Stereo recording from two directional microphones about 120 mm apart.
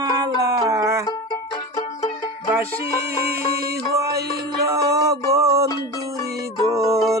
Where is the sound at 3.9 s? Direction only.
25° right (ahead or behind).